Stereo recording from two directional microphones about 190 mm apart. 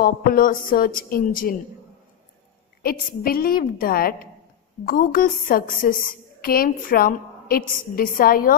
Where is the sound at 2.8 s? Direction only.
50° left (ahead or behind).